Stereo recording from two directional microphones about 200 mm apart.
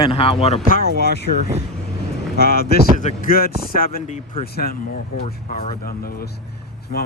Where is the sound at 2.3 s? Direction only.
50° left (ahead or behind).